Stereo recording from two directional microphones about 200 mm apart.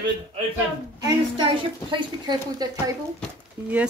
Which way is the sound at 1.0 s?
25° right (ahead or behind).